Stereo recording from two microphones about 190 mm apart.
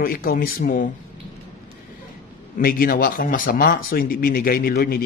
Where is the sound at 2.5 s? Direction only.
50° left (ahead or behind).